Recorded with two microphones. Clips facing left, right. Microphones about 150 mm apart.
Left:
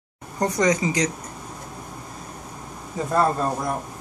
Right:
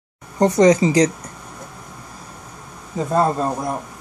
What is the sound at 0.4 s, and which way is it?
Speech, 30° right (ahead or behind).